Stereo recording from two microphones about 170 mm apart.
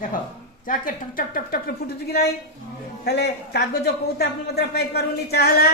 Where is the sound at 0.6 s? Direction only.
55° left (ahead or behind).